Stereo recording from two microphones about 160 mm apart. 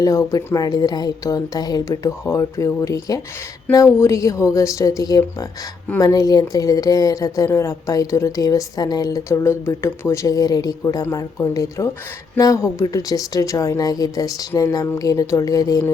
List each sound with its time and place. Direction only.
0.0 s a woman's voice: 20° left (ahead or behind)